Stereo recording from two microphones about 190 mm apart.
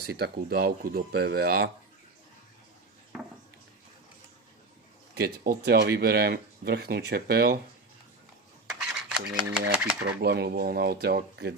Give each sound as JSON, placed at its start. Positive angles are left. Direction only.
{"t": 0.0, "sound": "speech", "side_deg": -55}
{"t": 3.1, "sound": "a sound", "side_deg": -5}
{"t": 5.1, "sound": "speech", "side_deg": -55}
{"t": 9.0, "sound": "speech", "side_deg": -5}
{"t": 10.2, "sound": "speech", "side_deg": -60}